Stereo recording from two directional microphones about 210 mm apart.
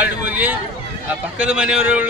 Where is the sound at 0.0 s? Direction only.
5° right (ahead or behind).